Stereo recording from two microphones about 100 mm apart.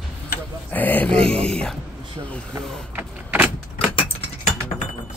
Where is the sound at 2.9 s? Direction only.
15° right (ahead or behind).